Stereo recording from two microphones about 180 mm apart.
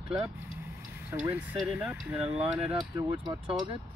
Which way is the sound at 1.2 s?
10° right (ahead or behind).